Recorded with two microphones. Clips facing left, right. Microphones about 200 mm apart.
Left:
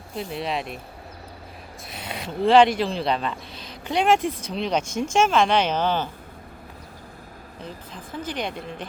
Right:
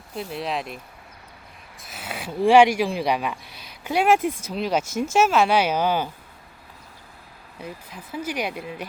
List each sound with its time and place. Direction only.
0.2 s speech: centre (ahead or behind)
1.9 s speech: 5° right (ahead or behind)
7.6 s speech: 10° right (ahead or behind)